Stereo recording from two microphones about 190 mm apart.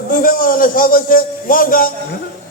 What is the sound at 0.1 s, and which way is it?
A man's voice, 45° left (ahead or behind).